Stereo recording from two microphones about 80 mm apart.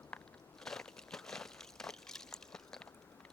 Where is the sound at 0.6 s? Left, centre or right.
Centre.